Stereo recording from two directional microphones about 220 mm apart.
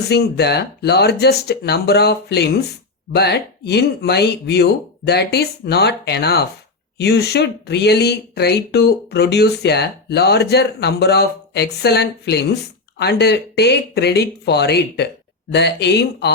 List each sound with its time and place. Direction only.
0.1 s speech: 50° left (ahead or behind)